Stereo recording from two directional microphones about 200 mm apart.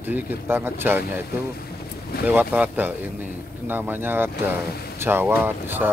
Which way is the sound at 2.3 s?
10° right (ahead or behind).